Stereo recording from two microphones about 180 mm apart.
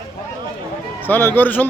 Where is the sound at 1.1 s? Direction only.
10° left (ahead or behind).